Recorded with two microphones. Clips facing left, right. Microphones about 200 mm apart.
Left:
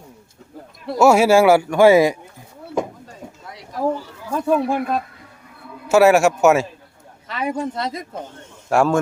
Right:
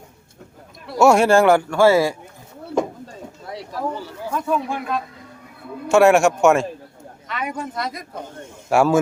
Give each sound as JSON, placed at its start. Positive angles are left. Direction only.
{"t": 0.9, "sound": "a man's voice", "side_deg": 5}
{"t": 4.4, "sound": "speech", "side_deg": 35}
{"t": 5.9, "sound": "a man's voice", "side_deg": 5}
{"t": 7.3, "sound": "speech", "side_deg": 30}
{"t": 8.7, "sound": "a man's voice", "side_deg": 0}